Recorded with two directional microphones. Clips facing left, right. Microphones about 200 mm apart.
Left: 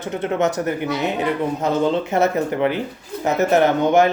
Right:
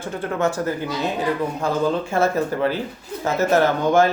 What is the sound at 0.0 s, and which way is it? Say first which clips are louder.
Speech: left 2 dB; 20° left (ahead or behind).